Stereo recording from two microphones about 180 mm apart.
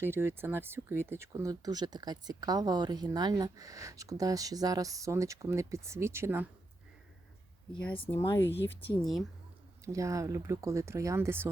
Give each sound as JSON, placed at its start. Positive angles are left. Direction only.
{"t": 0.0, "sound": "speech", "side_deg": -15}
{"t": 7.9, "sound": "speech", "side_deg": 30}
{"t": 8.4, "sound": "speech", "side_deg": 85}
{"t": 9.8, "sound": "speech", "side_deg": -15}